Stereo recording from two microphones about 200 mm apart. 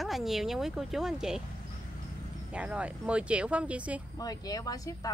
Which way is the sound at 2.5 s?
5° right (ahead or behind).